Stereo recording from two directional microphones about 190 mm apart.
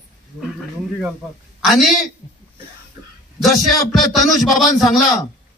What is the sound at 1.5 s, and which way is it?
Speech, centre (ahead or behind).